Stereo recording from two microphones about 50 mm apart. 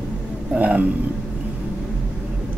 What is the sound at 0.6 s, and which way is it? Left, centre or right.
Speech, right.